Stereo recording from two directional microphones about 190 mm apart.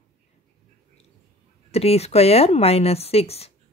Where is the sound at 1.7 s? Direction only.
35° left (ahead or behind).